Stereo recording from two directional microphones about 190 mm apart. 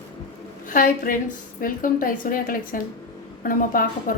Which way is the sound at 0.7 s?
45° left (ahead or behind).